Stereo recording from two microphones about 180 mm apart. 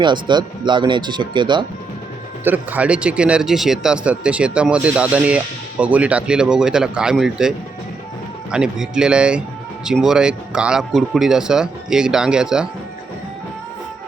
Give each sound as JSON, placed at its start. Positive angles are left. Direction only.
{"t": 0.0, "sound": "speech", "side_deg": -25}
{"t": 2.4, "sound": "speech", "side_deg": -10}
{"t": 8.5, "sound": "speech", "side_deg": -5}